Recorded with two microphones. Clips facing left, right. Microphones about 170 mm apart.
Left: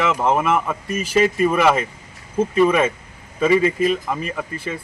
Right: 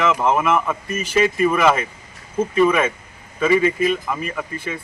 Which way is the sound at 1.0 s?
35° left (ahead or behind).